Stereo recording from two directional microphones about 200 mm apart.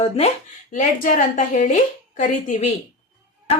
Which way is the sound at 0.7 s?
40° left (ahead or behind).